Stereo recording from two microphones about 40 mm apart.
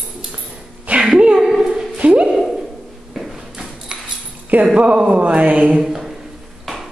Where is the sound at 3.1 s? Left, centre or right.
Centre.